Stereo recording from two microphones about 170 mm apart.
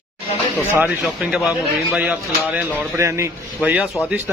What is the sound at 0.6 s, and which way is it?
Speech, 10° right (ahead or behind).